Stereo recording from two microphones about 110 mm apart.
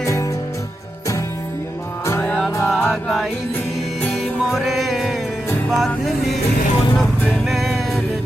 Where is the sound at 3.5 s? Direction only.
15° left (ahead or behind).